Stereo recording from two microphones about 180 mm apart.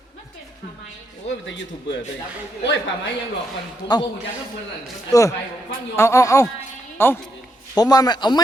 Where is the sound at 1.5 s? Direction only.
90° left.